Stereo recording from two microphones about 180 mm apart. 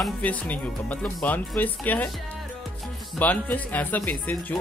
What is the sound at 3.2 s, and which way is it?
Speech, 10° left (ahead or behind).